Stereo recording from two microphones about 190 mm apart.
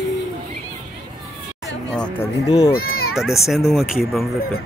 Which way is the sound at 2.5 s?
20° left (ahead or behind).